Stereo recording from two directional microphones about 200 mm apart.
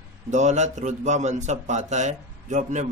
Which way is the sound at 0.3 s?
35° right (ahead or behind).